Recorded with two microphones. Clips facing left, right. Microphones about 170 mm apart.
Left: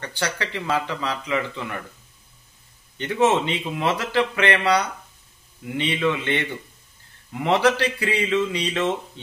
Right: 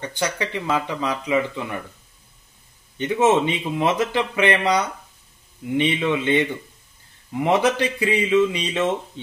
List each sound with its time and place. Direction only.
0.0 s speech: 20° right (ahead or behind)
3.0 s speech: 20° right (ahead or behind)
7.4 s speech: 20° right (ahead or behind)